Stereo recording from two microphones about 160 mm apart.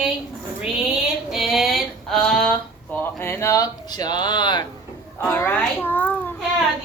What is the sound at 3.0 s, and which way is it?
Speech, 15° left (ahead or behind).